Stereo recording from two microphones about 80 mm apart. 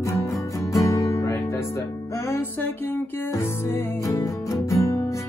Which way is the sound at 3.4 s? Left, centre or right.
Left.